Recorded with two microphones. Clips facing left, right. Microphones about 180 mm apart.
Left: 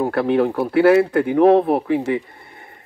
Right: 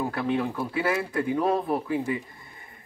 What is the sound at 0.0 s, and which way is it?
Speech, 65° left (ahead or behind).